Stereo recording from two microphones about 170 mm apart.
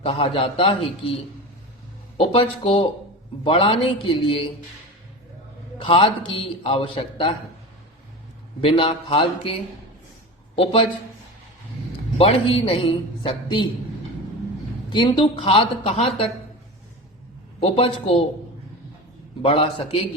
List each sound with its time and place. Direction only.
0.0 s a man's voice: 35° left (ahead or behind)
5.8 s a man's voice: 35° left (ahead or behind)
8.6 s a man's voice: 35° left (ahead or behind)
12.1 s a man's voice: 35° left (ahead or behind)
14.8 s a man's voice: 30° left (ahead or behind)
17.6 s a man's voice: 35° left (ahead or behind)
19.4 s a man's voice: 35° left (ahead or behind)